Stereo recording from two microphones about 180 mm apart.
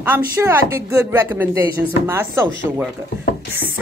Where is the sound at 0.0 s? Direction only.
10° right (ahead or behind).